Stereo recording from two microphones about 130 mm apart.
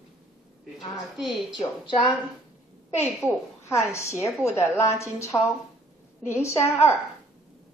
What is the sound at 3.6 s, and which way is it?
A woman's voice, 20° left (ahead or behind).